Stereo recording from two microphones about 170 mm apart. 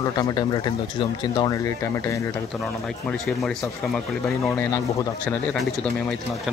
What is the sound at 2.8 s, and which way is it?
Speech, 5° left (ahead or behind).